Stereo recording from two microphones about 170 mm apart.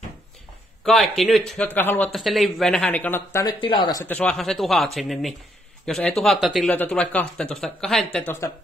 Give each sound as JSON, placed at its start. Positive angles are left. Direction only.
{"t": 0.8, "sound": "speech", "side_deg": 0}
{"t": 2.1, "sound": "speech", "side_deg": 0}
{"t": 3.4, "sound": "speech", "side_deg": 30}
{"t": 4.0, "sound": "speech", "side_deg": 5}